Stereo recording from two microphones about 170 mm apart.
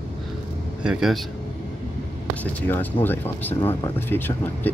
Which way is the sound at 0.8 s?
Centre (ahead or behind).